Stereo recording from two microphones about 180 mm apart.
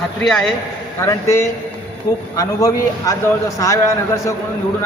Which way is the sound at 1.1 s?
15° left (ahead or behind).